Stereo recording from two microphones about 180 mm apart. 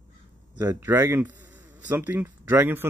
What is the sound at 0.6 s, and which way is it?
A man's voice, 10° right (ahead or behind).